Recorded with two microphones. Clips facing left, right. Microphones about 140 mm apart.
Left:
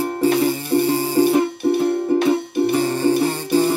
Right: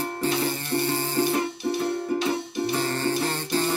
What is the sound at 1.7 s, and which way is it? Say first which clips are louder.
Music: left 8 dB; 55° left (ahead or behind).